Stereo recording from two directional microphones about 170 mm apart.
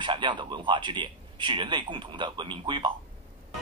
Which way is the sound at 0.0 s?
30° right (ahead or behind).